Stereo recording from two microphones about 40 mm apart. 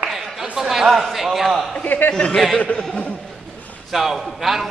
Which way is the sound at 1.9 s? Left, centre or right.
Left.